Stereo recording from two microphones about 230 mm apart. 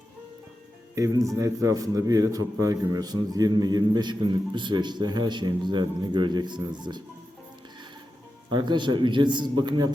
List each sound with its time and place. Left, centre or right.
0.9 s a man's voice: centre
8.4 s a man's voice: centre